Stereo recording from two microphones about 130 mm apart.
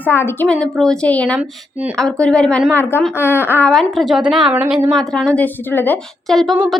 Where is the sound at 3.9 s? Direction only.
5° right (ahead or behind); by 6.0 s 15° left (ahead or behind).